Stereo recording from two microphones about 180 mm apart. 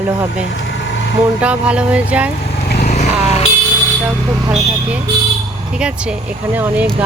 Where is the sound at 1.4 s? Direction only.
5° right (ahead or behind).